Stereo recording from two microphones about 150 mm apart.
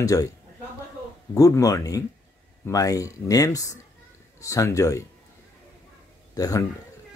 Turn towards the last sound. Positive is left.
turn(degrees=25)  # may be behind; listen again after turning